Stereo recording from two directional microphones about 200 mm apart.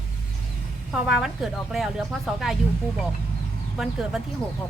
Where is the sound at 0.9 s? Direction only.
Centre (ahead or behind).